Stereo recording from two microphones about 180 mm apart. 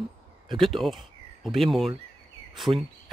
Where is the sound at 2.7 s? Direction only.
25° right (ahead or behind).